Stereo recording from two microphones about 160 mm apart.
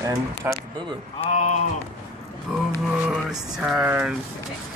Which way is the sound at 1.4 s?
45° left (ahead or behind).